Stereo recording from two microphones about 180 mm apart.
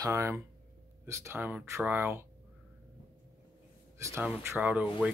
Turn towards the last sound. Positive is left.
turn(degrees=-10)  # may be behind; listen again after turning